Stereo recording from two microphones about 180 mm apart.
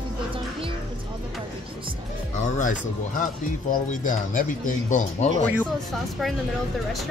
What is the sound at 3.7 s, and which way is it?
Speech, 45° left (ahead or behind).